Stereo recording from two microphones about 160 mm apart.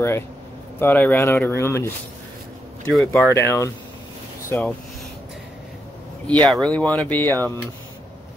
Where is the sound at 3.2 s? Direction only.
15° left (ahead or behind).